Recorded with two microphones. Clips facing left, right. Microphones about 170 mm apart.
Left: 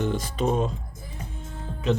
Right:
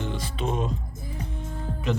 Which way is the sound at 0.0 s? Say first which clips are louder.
Left 5 dB; 45° left (ahead or behind).